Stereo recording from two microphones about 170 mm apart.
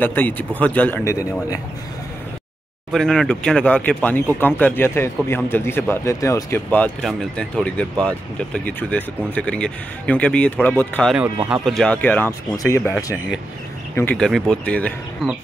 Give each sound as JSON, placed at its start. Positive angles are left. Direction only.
{"t": 0.0, "sound": "a man's voice", "side_deg": 10}
{"t": 2.9, "sound": "a man's voice", "side_deg": 5}
{"t": 11.4, "sound": "a man's voice", "side_deg": -5}
{"t": 13.9, "sound": "a man's voice", "side_deg": 5}